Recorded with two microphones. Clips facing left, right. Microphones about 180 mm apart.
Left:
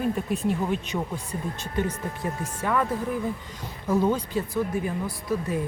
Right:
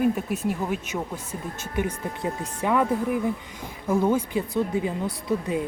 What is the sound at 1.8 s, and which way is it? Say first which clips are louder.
Speech: right 1 dB; 15° right (ahead or behind).